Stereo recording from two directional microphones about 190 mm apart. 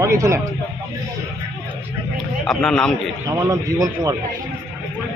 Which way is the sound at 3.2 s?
15° right (ahead or behind).